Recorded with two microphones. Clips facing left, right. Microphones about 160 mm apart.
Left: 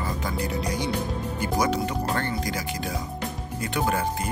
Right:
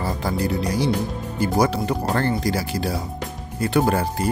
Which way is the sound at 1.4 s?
30° right (ahead or behind).